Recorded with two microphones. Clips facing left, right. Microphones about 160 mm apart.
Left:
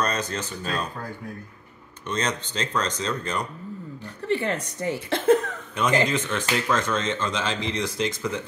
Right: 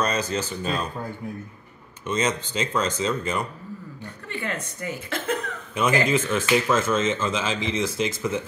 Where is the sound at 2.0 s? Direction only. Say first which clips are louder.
Right 3 dB; 5° right (ahead or behind).